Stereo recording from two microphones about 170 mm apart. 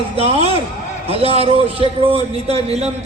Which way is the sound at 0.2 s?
35° right (ahead or behind).